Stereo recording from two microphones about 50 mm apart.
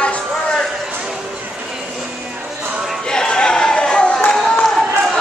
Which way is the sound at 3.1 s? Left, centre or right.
Centre.